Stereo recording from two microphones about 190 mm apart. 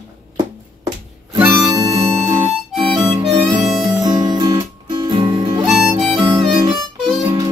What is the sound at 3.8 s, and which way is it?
Music, 20° right (ahead or behind).